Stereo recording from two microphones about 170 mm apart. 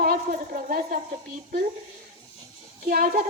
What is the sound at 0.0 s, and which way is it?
Speech, 50° right (ahead or behind).